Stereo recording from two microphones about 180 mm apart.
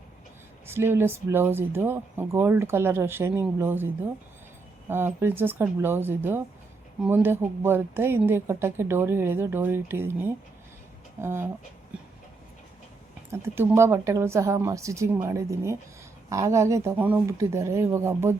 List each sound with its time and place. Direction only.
0.7 s a woman's voice: 15° right (ahead or behind)
4.9 s a woman's voice: 10° right (ahead or behind)
13.3 s a woman's voice: 15° right (ahead or behind)